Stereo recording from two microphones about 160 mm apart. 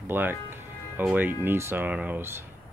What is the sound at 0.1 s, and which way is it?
Music, 15° right (ahead or behind).